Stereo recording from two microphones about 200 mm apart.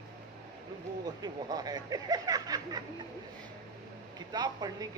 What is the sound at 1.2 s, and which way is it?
Speech, 20° right (ahead or behind).